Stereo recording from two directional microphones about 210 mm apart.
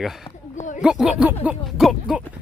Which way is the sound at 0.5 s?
35° left (ahead or behind).